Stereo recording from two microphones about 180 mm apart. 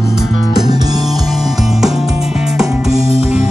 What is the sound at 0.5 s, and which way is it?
Music, 20° right (ahead or behind).